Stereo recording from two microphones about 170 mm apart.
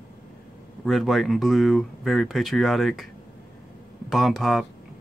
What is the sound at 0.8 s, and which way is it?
Speech, centre (ahead or behind).